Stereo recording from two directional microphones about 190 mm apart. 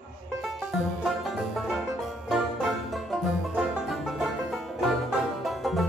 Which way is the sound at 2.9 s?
Centre (ahead or behind).